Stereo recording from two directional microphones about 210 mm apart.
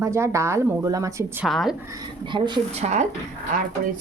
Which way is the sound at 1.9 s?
20° right (ahead or behind).